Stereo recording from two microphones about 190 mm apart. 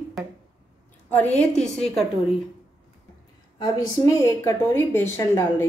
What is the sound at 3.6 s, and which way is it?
A woman's voice, 15° left (ahead or behind).